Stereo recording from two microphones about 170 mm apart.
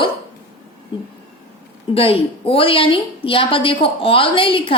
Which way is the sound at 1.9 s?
35° left (ahead or behind).